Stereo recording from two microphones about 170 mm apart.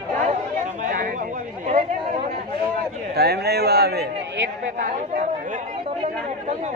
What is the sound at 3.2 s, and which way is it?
Speech, 70° right (ahead or behind).